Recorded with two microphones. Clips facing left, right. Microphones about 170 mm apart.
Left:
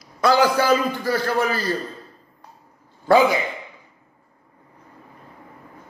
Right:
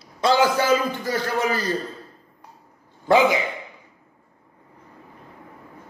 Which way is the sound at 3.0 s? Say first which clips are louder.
Left 1 dB; 20° right (ahead or behind).